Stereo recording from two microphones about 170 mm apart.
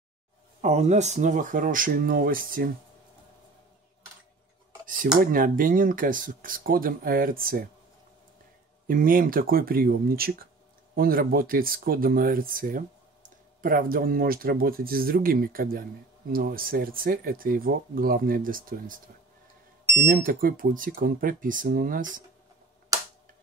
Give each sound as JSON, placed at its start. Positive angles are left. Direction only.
{"t": 0.6, "sound": "speech", "side_deg": -40}
{"t": 4.8, "sound": "cutlery", "side_deg": -55}
{"t": 5.2, "sound": "speech", "side_deg": -55}
{"t": 8.8, "sound": "speech", "side_deg": -55}
{"t": 20.0, "sound": "speech", "side_deg": -60}
{"t": 22.9, "sound": "a sound", "side_deg": -20}